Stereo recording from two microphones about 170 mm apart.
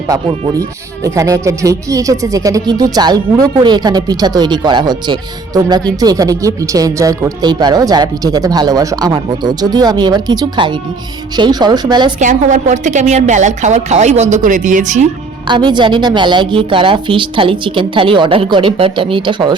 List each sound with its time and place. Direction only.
0.3 s speech: 25° right (ahead or behind)
12.2 s a woman's voice: 45° right (ahead or behind)
15.4 s speech: 25° right (ahead or behind)